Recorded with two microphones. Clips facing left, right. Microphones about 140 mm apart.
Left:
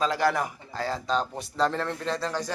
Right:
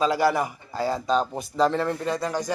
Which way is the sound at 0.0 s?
10° right (ahead or behind).